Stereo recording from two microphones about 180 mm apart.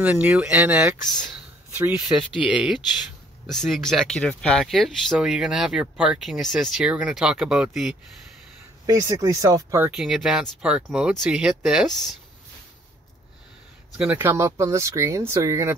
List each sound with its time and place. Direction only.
0.0 s speech: 10° right (ahead or behind)
8.8 s speech: 20° right (ahead or behind)
9.9 s speech: 5° right (ahead or behind)
13.9 s speech: 10° right (ahead or behind)